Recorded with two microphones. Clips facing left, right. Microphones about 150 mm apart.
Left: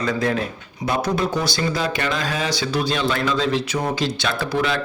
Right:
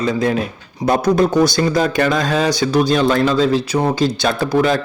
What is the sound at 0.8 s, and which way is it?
Speech, 45° right (ahead or behind).